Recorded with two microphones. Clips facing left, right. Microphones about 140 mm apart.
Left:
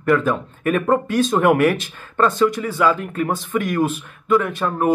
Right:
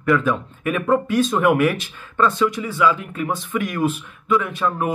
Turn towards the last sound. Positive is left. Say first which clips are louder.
# left 2 dB
turn(degrees=40)  # may be behind; listen again after turning